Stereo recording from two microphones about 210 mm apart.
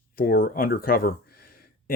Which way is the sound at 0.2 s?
45° left (ahead or behind).